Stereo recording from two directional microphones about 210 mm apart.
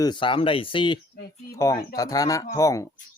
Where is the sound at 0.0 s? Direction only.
20° left (ahead or behind).